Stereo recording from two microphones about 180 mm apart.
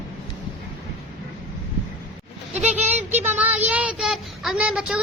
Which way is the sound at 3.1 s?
40° right (ahead or behind).